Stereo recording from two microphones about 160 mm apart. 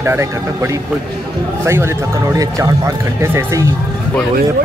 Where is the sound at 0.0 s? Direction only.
15° right (ahead or behind).